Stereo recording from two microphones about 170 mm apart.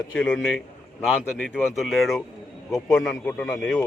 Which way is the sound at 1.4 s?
Centre (ahead or behind).